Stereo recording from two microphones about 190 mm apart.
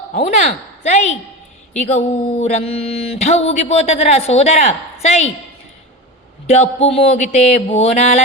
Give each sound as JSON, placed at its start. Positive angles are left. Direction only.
{"t": 0.1, "sound": "speech", "side_deg": 40}
{"t": 1.7, "sound": "speech", "side_deg": 35}
{"t": 6.5, "sound": "speech", "side_deg": 35}